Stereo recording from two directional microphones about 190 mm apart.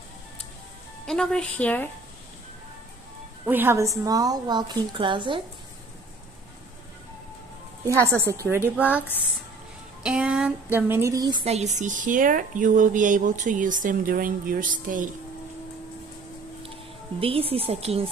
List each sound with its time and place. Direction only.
1.0 s a woman's voice: 5° left (ahead or behind)
3.4 s a woman's voice: 10° right (ahead or behind)
8.2 s a sound: 15° right (ahead or behind)
10.0 s a sound: 5° right (ahead or behind); by 11.4 s 20° right (ahead or behind)
11.4 s speech: 35° right (ahead or behind)
17.2 s a woman's voice: 30° right (ahead or behind)